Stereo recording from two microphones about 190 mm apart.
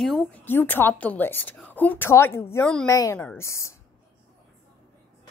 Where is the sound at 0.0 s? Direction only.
5° left (ahead or behind).